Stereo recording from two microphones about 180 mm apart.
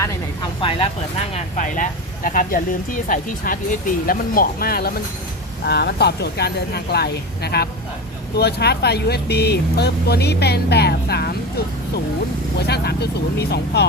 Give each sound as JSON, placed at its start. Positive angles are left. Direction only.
{"t": 0.6, "sound": "speech", "side_deg": 30}
{"t": 1.3, "sound": "speech", "side_deg": 45}
{"t": 12.6, "sound": "speech", "side_deg": 65}